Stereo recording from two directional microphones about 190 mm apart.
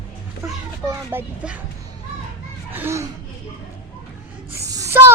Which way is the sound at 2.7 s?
10° right (ahead or behind).